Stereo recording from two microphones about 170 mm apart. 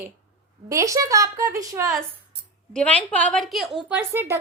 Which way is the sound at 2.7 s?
10° left (ahead or behind).